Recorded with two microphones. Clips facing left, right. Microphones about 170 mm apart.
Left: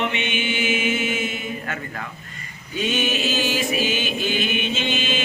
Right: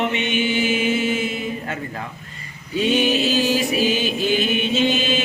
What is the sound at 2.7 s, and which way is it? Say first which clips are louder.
Mantra: right 5 dB; 35° right (ahead or behind).